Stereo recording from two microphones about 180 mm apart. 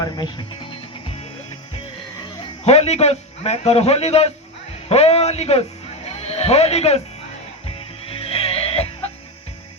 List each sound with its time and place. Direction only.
0.0 s music: 25° left (ahead or behind)
2.4 s a man's voice: 35° left (ahead or behind)
8.2 s music: 30° left (ahead or behind)